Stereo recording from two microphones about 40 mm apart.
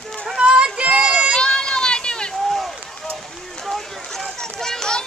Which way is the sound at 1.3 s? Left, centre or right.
Centre.